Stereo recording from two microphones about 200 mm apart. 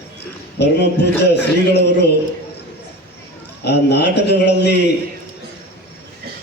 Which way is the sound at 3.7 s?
55° left (ahead or behind).